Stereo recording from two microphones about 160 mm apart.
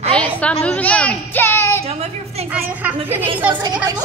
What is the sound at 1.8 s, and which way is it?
Speech, 40° right (ahead or behind).